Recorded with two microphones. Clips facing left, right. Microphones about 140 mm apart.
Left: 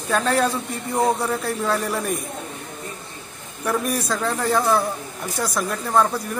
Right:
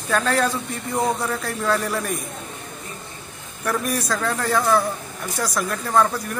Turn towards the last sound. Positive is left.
turn(degrees=5)  # may be behind; listen again after turning